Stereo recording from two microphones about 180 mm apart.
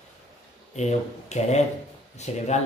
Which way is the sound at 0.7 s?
40° left (ahead or behind).